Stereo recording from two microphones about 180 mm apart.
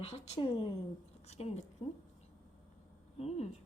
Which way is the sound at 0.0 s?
35° left (ahead or behind).